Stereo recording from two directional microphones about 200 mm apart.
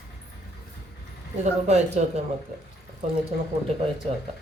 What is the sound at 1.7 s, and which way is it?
Speech, 35° right (ahead or behind).